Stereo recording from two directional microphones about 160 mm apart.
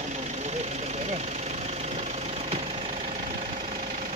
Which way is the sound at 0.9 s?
45° right (ahead or behind).